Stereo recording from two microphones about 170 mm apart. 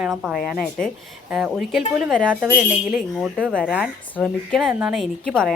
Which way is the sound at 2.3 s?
10° right (ahead or behind).